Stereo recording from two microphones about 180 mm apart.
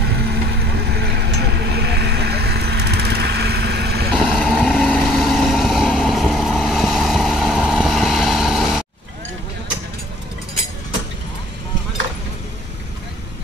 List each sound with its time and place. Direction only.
0.6 s vehicle: 65° right (ahead or behind)
4.2 s vehicle: centre (ahead or behind)